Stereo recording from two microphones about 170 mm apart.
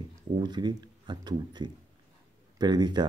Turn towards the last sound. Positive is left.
turn(degrees=-25)  # may be behind; listen again after turning